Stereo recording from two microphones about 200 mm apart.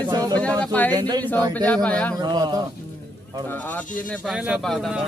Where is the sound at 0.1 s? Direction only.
20° right (ahead or behind).